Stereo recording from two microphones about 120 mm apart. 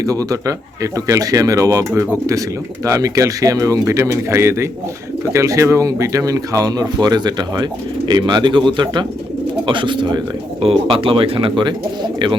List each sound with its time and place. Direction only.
0.0 s speech: 30° right (ahead or behind)